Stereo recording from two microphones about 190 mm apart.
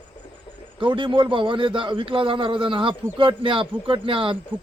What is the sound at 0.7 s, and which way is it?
A man's voice, 25° right (ahead or behind).